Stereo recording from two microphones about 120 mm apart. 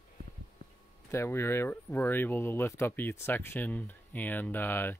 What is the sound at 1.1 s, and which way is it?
Speech, 20° left (ahead or behind).